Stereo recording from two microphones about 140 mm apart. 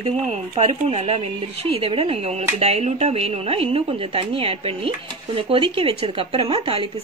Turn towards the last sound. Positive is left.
turn(degrees=-40)  # may be behind; listen again after turning